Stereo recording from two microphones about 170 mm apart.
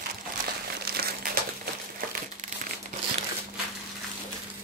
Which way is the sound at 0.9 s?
65° right (ahead or behind).